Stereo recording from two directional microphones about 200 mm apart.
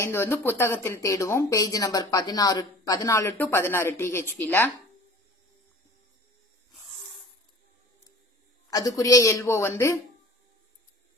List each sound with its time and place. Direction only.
0.0 s a woman's voice: 10° left (ahead or behind)
8.6 s a woman's voice: 15° left (ahead or behind)